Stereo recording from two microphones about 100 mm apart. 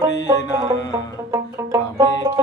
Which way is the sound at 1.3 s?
30° right (ahead or behind).